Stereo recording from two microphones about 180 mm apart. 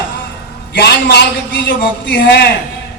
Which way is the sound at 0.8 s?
70° left (ahead or behind).